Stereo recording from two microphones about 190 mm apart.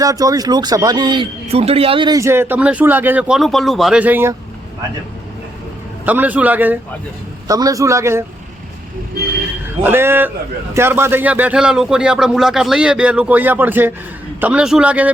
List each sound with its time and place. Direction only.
0.0 s a man's voice: 20° right (ahead or behind)
6.1 s a man's voice: 10° right (ahead or behind)
9.8 s a man's voice: 10° right (ahead or behind)